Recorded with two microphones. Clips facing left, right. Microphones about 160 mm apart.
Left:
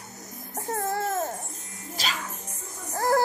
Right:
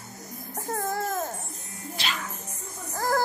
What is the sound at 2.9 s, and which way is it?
Music, 25° left (ahead or behind).